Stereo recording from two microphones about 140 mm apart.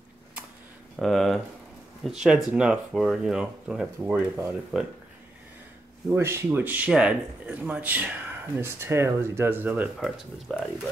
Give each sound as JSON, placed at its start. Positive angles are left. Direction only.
{"t": 0.9, "sound": "speech", "side_deg": 0}
{"t": 6.0, "sound": "speech", "side_deg": -15}
{"t": 9.9, "sound": "speech", "side_deg": -5}